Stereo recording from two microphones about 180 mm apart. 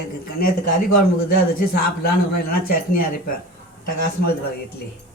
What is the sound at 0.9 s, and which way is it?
A man's voice, 55° left (ahead or behind).